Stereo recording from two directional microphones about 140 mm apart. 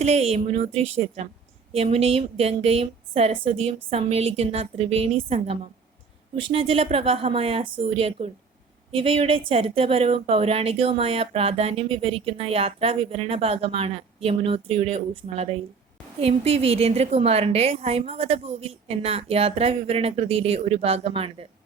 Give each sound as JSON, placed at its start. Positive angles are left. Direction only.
{"t": 0.0, "sound": "a woman's voice", "side_deg": -50}